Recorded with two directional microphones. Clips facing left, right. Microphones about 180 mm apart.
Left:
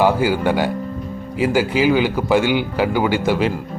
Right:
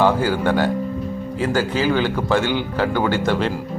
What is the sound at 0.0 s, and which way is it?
A man's voice, 10° left (ahead or behind).